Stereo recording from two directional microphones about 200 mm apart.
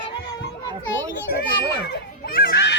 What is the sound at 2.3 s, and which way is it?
Honk, 50° left (ahead or behind).